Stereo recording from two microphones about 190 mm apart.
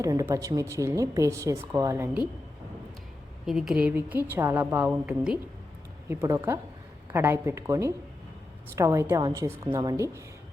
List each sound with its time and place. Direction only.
0.0 s a woman's voice: 15° right (ahead or behind)
3.4 s a woman's voice: centre (ahead or behind)